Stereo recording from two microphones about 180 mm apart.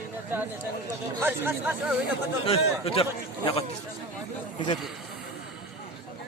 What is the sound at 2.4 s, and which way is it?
A man's voice, 30° left (ahead or behind).